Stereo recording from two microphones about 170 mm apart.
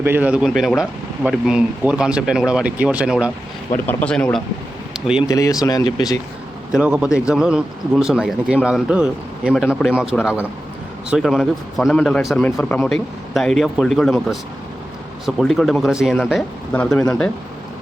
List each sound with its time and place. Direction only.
0.0 s speech: 10° right (ahead or behind)
3.8 s speech: 5° left (ahead or behind)
5.2 s speech: 20° left (ahead or behind)
6.7 s speech: 5° right (ahead or behind)
10.1 s speech: 10° left (ahead or behind)
11.1 s speech: centre (ahead or behind)
15.4 s speech: centre (ahead or behind)
16.7 s speech: 10° left (ahead or behind)